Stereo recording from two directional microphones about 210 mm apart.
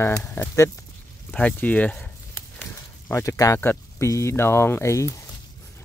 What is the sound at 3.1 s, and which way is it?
Speech, 15° left (ahead or behind).